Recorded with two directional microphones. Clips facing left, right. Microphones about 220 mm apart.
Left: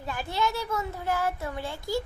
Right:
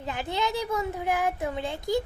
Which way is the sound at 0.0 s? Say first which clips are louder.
Even; 20° right (ahead or behind).